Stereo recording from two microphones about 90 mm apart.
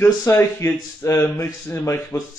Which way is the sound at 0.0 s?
30° left (ahead or behind).